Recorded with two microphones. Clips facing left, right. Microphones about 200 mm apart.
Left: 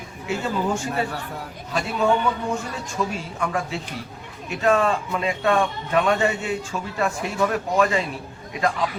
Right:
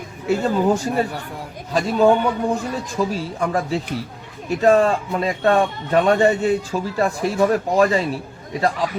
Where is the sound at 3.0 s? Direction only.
35° right (ahead or behind).